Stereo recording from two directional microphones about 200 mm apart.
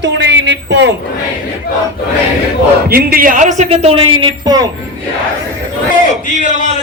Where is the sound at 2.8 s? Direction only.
50° right (ahead or behind); by 4.6 s 25° right (ahead or behind).